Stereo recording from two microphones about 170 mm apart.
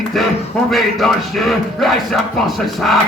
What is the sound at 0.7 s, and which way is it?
Speech, centre (ahead or behind).